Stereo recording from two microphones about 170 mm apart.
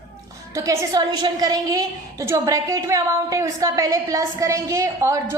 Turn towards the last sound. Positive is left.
turn(degrees=-15)  # may be behind; listen again after turning